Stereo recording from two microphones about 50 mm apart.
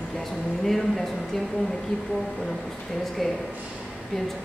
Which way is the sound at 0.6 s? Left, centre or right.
Centre.